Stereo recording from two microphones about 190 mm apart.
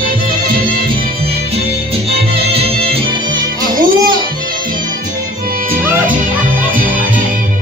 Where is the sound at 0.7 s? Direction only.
30° right (ahead or behind).